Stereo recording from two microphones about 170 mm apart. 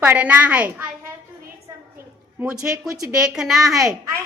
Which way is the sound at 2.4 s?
5° right (ahead or behind).